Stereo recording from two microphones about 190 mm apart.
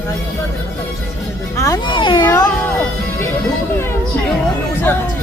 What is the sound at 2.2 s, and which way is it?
Music, 20° left (ahead or behind).